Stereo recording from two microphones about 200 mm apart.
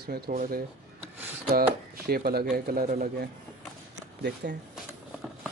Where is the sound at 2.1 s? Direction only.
50° right (ahead or behind).